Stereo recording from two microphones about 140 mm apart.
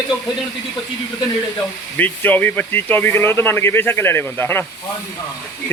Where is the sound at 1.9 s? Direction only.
15° left (ahead or behind).